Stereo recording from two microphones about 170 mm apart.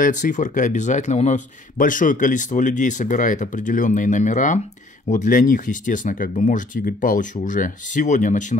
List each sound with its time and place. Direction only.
0.0 s a man's voice: 50° left (ahead or behind)